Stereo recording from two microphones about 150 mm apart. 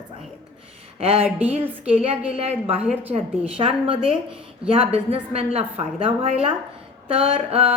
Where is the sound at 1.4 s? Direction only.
10° right (ahead or behind).